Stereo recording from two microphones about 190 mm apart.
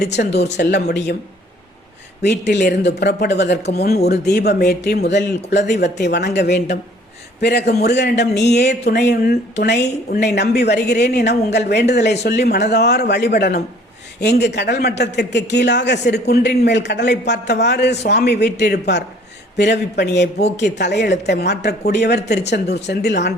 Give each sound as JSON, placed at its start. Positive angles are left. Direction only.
{"t": 0.2, "sound": "speech", "side_deg": 60}
{"t": 2.2, "sound": "speech", "side_deg": 65}